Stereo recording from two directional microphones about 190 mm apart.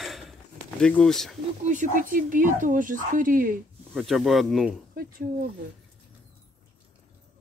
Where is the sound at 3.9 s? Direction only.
Centre (ahead or behind).